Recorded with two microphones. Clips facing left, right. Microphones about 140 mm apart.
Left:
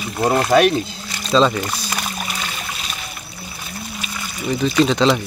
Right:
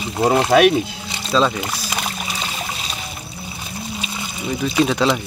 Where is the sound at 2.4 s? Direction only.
25° right (ahead or behind).